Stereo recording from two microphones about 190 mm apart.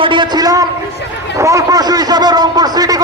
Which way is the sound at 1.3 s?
15° right (ahead or behind).